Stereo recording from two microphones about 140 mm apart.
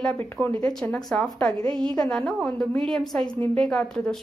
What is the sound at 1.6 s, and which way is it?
Speech, 35° right (ahead or behind).